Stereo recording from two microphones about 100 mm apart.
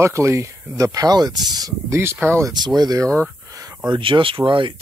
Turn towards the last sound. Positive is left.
turn(degrees=-55)  # may be behind; listen again after turning